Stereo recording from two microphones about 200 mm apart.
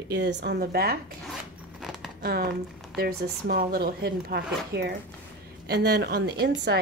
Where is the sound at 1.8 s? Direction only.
Centre (ahead or behind).